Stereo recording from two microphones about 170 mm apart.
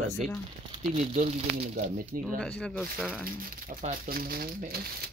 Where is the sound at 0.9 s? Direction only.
40° right (ahead or behind).